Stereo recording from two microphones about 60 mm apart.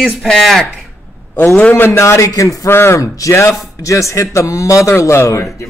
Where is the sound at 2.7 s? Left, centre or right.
Left.